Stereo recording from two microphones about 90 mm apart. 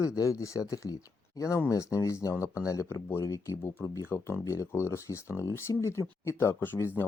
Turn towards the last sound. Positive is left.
turn(degrees=25)  # may be behind; listen again after turning